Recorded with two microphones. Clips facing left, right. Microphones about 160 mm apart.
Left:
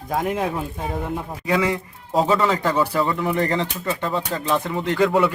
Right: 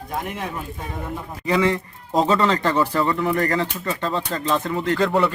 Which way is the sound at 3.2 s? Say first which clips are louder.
Even; 20° left (ahead or behind).